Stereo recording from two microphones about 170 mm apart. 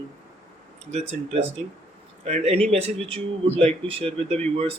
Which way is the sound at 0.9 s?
40° right (ahead or behind).